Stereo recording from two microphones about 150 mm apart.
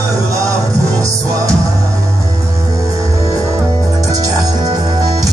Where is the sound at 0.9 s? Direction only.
20° right (ahead or behind).